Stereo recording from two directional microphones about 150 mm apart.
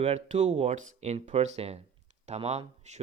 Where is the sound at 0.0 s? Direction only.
45° right (ahead or behind).